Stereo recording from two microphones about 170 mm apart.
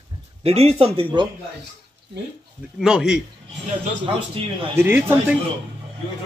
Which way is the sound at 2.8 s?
5° right (ahead or behind).